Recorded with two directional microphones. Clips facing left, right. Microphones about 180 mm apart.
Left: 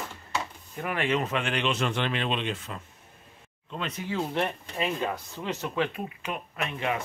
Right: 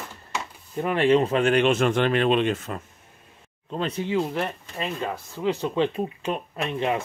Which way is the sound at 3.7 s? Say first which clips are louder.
Right 7 dB; 30° right (ahead or behind).